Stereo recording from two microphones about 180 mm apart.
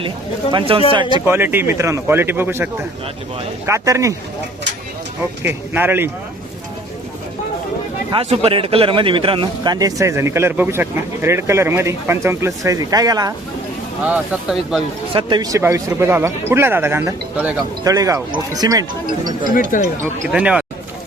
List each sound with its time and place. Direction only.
0.5 s speech: 30° right (ahead or behind)
1.3 s a man's voice: 10° right (ahead or behind)
5.4 s a man's voice: 10° right (ahead or behind)
8.1 s speech: 35° right (ahead or behind)
14.0 s speech: 5° right (ahead or behind)
15.1 s a man's voice: 25° right (ahead or behind)
17.8 s speech: 20° right (ahead or behind)
20.0 s a man's voice: 5° right (ahead or behind)